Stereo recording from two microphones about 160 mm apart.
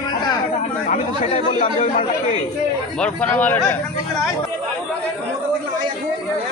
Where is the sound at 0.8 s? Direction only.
45° left (ahead or behind).